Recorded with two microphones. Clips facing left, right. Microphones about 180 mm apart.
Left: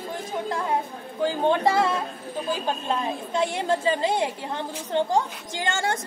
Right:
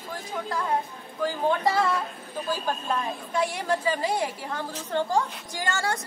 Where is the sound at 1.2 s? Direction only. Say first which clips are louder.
Left 3 dB; 25° left (ahead or behind).